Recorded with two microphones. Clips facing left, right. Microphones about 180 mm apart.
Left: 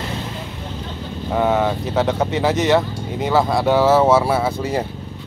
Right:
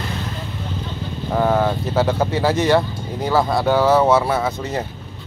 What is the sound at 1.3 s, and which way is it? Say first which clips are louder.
Speech: even; centre (ahead or behind).